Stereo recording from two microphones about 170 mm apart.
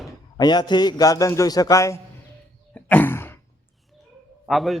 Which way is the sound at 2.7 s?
10° left (ahead or behind).